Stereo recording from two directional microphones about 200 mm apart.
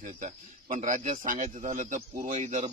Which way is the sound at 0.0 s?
35° right (ahead or behind).